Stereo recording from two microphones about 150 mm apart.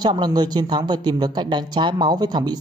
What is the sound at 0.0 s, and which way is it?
A man's voice, 30° right (ahead or behind).